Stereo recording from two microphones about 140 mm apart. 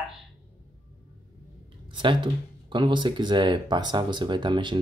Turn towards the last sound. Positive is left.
turn(degrees=-35)  # may be behind; listen again after turning